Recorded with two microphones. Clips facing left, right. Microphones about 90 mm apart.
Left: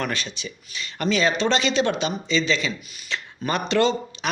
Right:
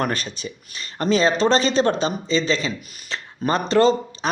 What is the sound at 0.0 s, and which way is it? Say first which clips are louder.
Speech: right 4 dB; 40° right (ahead or behind).